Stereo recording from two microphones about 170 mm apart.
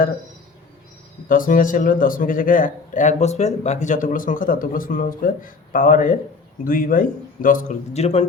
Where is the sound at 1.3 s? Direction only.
55° left (ahead or behind).